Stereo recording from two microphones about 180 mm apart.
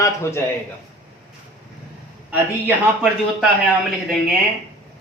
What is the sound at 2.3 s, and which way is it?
A man's voice, 5° right (ahead or behind).